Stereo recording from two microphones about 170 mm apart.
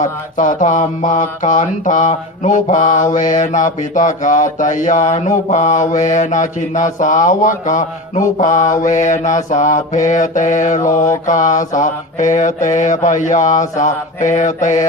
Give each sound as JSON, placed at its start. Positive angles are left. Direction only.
{"t": 0.0, "sound": "mantra", "side_deg": 50}